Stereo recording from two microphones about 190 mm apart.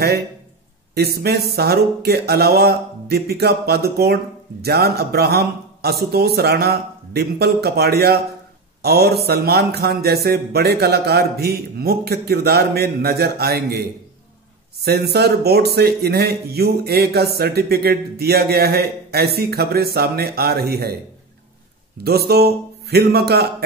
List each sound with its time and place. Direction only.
0.9 s speech: 55° right (ahead or behind)
22.0 s speech: 55° right (ahead or behind)